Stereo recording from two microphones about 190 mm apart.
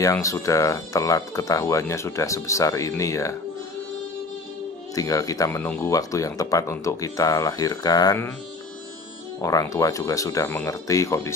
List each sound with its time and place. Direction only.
0.0 s speech: 15° left (ahead or behind)
4.9 s speech: 20° left (ahead or behind)
9.4 s speech: 15° left (ahead or behind)